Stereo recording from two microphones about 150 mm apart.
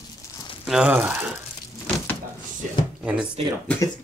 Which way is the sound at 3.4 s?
40° right (ahead or behind).